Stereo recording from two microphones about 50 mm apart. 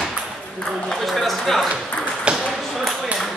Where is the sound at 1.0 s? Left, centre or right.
Centre.